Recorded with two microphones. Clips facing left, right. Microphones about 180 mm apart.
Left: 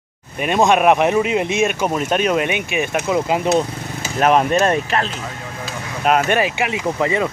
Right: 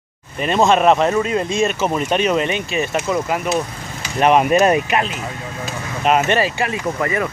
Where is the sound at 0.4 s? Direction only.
15° left (ahead or behind).